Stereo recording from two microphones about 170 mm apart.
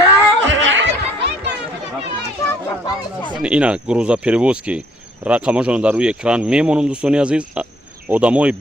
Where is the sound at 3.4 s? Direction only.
5° right (ahead or behind).